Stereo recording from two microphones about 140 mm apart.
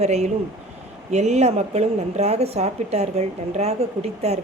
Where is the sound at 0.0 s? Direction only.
50° right (ahead or behind).